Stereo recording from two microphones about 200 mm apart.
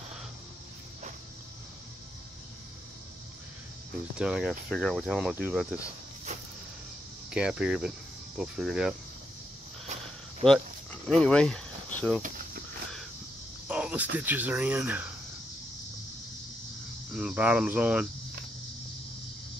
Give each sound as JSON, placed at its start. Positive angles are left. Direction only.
{"t": 4.2, "sound": "speech", "side_deg": 0}
{"t": 7.2, "sound": "speech", "side_deg": -5}
{"t": 10.4, "sound": "cricket", "side_deg": 5}
{"t": 13.7, "sound": "cricket", "side_deg": -5}
{"t": 14.1, "sound": "speech", "side_deg": -10}
{"t": 17.1, "sound": "speech", "side_deg": -5}